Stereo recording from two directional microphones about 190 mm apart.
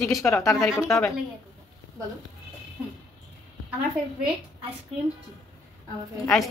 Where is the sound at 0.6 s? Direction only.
Centre (ahead or behind).